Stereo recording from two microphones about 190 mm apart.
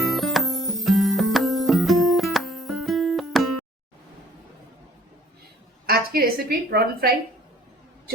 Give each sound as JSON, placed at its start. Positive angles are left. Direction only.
{"t": 0.0, "sound": "music", "side_deg": 0}
{"t": 5.8, "sound": "a woman's voice", "side_deg": -50}